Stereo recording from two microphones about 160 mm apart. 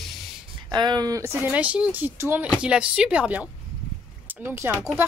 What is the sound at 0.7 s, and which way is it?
Speech, 25° right (ahead or behind).